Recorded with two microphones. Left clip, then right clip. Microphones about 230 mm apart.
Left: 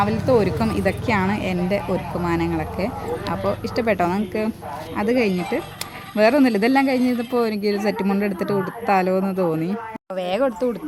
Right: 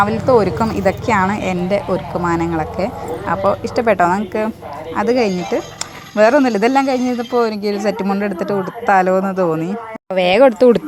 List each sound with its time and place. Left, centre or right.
0.0 s a woman's voice: centre
10.2 s speech: right